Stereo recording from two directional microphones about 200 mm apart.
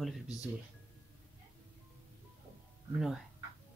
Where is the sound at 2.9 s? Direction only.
Centre (ahead or behind).